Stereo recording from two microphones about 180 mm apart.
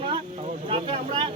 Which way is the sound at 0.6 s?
30° right (ahead or behind).